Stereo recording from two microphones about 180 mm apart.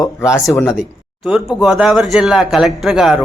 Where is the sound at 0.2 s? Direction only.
15° left (ahead or behind).